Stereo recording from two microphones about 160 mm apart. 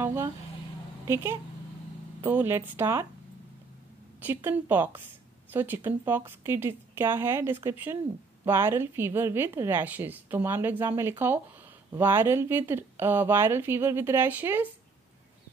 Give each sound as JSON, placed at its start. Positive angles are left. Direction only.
{"t": 0.0, "sound": "a woman's voice", "side_deg": -15}
{"t": 4.2, "sound": "a woman's voice", "side_deg": -10}